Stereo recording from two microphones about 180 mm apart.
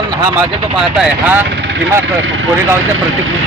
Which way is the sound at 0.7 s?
5° right (ahead or behind).